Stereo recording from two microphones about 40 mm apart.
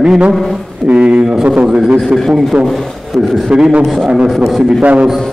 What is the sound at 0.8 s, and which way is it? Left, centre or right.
A man's voice, right.